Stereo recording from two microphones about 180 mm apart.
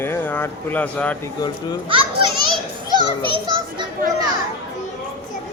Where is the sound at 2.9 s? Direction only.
25° right (ahead or behind).